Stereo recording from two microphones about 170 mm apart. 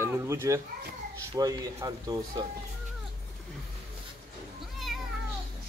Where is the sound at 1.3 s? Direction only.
25° right (ahead or behind).